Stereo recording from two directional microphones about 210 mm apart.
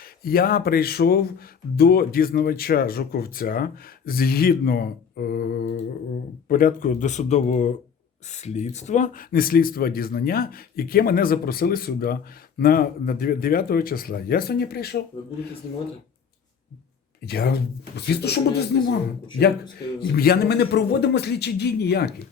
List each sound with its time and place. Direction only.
0.2 s speech: 45° left (ahead or behind)
17.2 s speech: 50° left (ahead or behind)
20.1 s speech: 45° left (ahead or behind)